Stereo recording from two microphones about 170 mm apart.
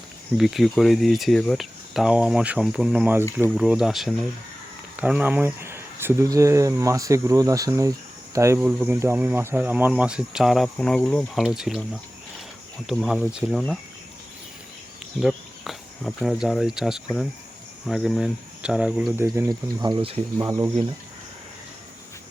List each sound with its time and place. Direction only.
0.3 s speech: centre (ahead or behind)
12.9 s speech: centre (ahead or behind)
15.2 s speech: centre (ahead or behind); by 19.5 s 15° right (ahead or behind)
19.8 s speech: 30° right (ahead or behind)